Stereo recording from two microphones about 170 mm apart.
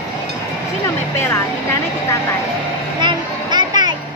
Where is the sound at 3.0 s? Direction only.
25° right (ahead or behind).